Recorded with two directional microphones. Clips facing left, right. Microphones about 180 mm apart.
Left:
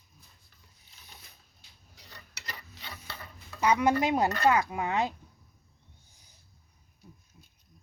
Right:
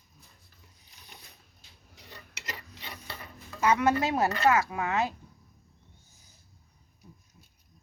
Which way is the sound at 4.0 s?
15° left (ahead or behind).